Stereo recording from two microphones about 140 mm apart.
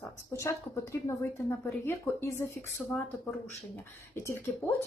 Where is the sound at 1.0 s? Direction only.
20° left (ahead or behind).